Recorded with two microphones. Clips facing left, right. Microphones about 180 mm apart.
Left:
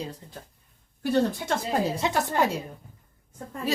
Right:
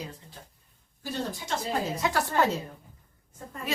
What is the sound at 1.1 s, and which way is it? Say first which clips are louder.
Speech: left 9 dB; 60° left (ahead or behind).